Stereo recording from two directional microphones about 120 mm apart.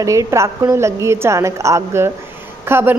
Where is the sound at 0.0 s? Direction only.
25° right (ahead or behind).